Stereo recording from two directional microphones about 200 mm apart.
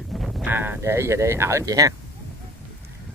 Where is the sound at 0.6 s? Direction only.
10° right (ahead or behind).